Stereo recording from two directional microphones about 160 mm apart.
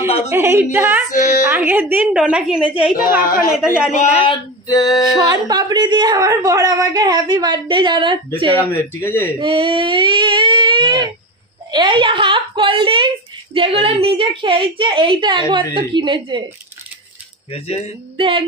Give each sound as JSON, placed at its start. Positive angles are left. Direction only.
{"t": 0.3, "sound": "a woman's voice", "side_deg": -15}
{"t": 1.1, "sound": "a woman's voice", "side_deg": 50}
{"t": 1.5, "sound": "a woman's voice", "side_deg": -10}
{"t": 4.6, "sound": "music", "side_deg": 20}
{"t": 5.3, "sound": "a woman's voice", "side_deg": -25}
{"t": 8.5, "sound": "speech", "side_deg": 15}
{"t": 9.4, "sound": "a woman's voice", "side_deg": -30}
{"t": 17.5, "sound": "speech", "side_deg": 40}
{"t": 18.1, "sound": "a woman's voice", "side_deg": -35}